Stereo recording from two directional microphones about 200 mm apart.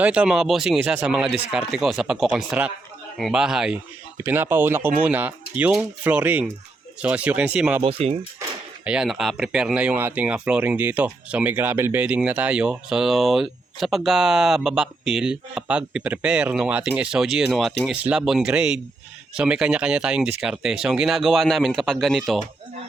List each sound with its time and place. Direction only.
0.0 s speech: 5° right (ahead or behind)
7.8 s speech: 30° right (ahead or behind)
8.8 s speech: 5° right (ahead or behind)